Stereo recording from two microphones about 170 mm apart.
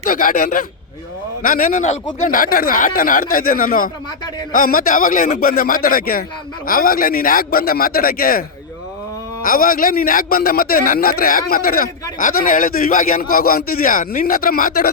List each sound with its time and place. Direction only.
0.0 s a man's voice: 55° left (ahead or behind)